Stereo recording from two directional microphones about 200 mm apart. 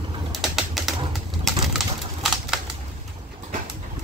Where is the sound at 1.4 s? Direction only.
Centre (ahead or behind).